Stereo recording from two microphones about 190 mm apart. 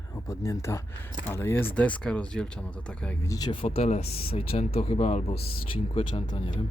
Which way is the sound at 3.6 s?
35° left (ahead or behind).